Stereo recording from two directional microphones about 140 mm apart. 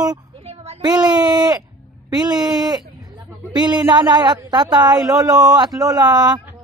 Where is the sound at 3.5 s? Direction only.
30° right (ahead or behind).